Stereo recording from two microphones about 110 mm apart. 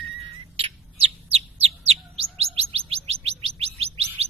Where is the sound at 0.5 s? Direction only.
60° right (ahead or behind).